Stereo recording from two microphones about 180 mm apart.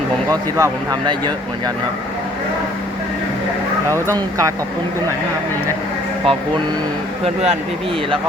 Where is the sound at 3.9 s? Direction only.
15° left (ahead or behind).